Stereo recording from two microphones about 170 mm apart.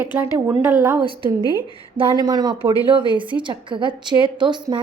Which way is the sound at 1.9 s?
25° right (ahead or behind).